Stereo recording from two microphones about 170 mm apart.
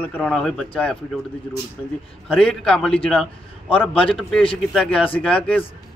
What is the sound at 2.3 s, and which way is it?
Speech, 5° left (ahead or behind).